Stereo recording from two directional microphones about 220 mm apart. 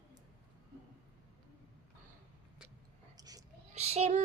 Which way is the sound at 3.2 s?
15° right (ahead or behind).